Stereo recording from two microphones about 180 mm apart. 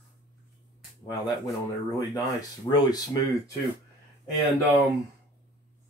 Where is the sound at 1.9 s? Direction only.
20° left (ahead or behind).